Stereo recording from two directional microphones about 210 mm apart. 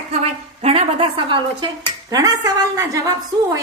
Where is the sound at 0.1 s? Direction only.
30° right (ahead or behind).